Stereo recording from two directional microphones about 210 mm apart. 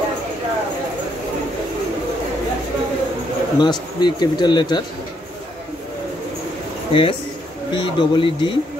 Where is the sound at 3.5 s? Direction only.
20° left (ahead or behind).